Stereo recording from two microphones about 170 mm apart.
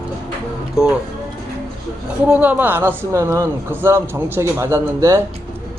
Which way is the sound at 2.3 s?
10° right (ahead or behind).